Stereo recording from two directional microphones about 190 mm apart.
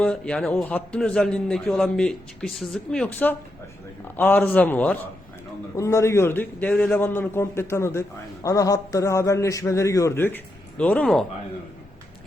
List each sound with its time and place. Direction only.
0.0 s a man's voice: 5° left (ahead or behind)